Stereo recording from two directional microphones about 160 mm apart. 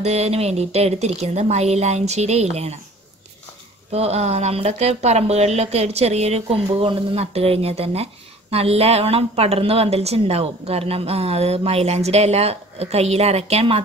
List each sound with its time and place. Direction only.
0.0 s speech: 40° right (ahead or behind)
3.9 s speech: 40° right (ahead or behind)